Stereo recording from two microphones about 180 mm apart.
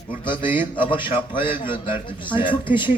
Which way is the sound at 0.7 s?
25° left (ahead or behind).